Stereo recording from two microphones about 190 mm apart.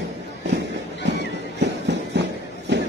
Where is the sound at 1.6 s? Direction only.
65° right (ahead or behind).